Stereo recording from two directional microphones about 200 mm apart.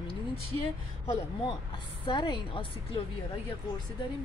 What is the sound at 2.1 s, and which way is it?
Speech, 25° left (ahead or behind).